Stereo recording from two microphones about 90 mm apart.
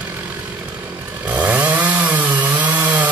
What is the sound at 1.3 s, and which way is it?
Chainsaw, 15° right (ahead or behind).